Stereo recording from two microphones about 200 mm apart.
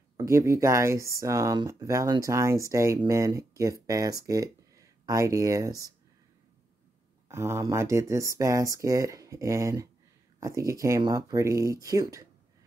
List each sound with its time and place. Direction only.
0.2 s speech: 15° right (ahead or behind)
7.2 s speech: 15° right (ahead or behind)